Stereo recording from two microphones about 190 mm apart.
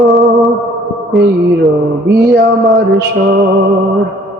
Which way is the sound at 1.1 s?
Centre (ahead or behind).